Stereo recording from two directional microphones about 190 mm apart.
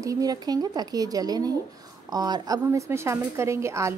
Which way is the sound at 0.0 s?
20° right (ahead or behind).